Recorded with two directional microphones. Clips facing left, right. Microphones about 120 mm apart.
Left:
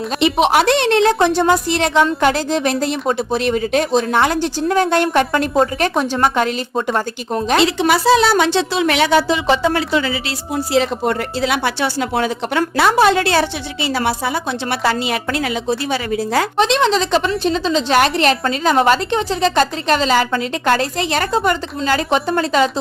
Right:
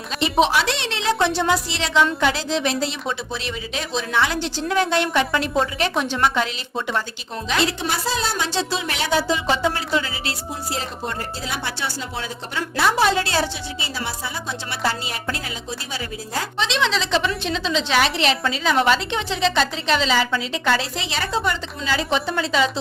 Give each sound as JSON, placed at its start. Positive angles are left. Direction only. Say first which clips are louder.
{"t": 0.4, "sound": "a woman's voice", "louder": "left 8 dB", "side_deg": 55}
{"t": 7.6, "sound": "a woman's voice", "louder": "left 8 dB", "side_deg": 90}
{"t": 16.6, "sound": "a woman's voice", "louder": "left 6 dB", "side_deg": 50}